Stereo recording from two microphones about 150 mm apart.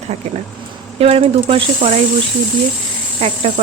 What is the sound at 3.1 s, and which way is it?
Speech, 40° right (ahead or behind).